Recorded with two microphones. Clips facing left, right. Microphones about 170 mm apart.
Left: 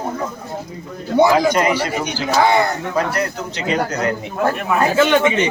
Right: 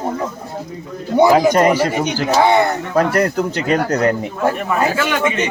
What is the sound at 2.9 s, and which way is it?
Speech, 50° right (ahead or behind).